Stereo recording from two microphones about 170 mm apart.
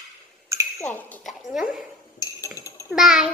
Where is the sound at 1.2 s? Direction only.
Centre (ahead or behind).